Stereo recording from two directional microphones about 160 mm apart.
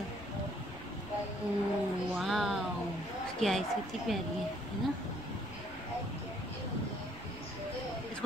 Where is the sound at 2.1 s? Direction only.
Centre (ahead or behind).